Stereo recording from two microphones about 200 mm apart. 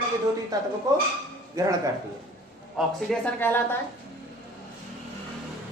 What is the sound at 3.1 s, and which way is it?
Speech, 10° left (ahead or behind).